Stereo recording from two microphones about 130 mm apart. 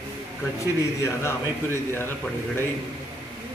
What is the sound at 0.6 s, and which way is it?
A man's voice, 20° left (ahead or behind).